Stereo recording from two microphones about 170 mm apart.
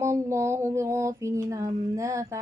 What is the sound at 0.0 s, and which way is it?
Mantra, 15° right (ahead or behind).